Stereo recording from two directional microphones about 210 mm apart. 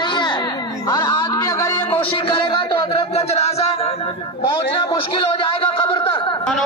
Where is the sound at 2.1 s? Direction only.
25° left (ahead or behind).